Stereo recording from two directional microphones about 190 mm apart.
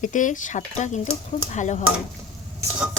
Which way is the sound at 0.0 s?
40° left (ahead or behind).